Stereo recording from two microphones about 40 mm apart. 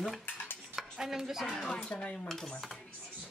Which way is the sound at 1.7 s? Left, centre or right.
Left.